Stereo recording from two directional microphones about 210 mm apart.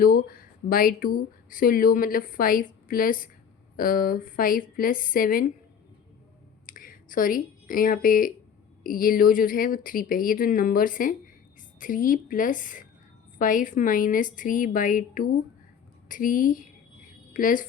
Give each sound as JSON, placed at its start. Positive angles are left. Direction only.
{"t": 0.0, "sound": "a woman's voice", "side_deg": 45}
{"t": 6.7, "sound": "a woman's voice", "side_deg": 40}